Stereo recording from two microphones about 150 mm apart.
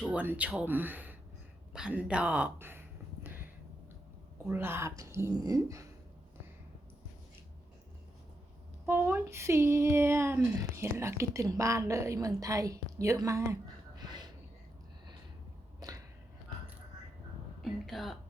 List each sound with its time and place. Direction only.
0.0 s a woman's voice: 10° right (ahead or behind)
4.4 s a woman's voice: 15° right (ahead or behind)
8.9 s speech: 15° right (ahead or behind)
14.0 s a sound: 25° right (ahead or behind)
15.8 s a sound: 25° right (ahead or behind)
17.6 s speech: centre (ahead or behind)